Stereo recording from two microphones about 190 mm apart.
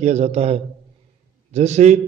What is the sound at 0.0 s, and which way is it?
A man's voice, 35° right (ahead or behind).